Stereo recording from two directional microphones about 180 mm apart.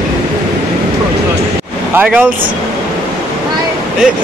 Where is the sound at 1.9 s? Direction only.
10° right (ahead or behind).